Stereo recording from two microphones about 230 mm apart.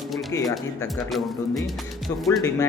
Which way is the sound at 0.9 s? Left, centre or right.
Centre.